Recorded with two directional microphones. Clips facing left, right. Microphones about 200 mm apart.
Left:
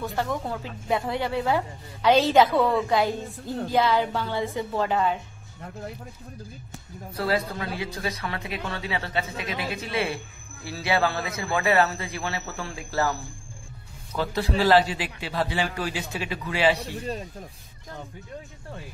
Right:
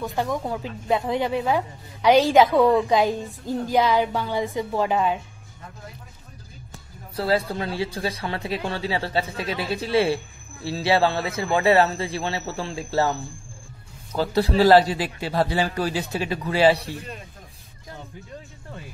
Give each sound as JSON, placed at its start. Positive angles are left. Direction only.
{"t": 0.0, "sound": "a woman's voice", "side_deg": -15}
{"t": 7.2, "sound": "speech", "side_deg": -30}
{"t": 14.1, "sound": "a man's voice", "side_deg": -35}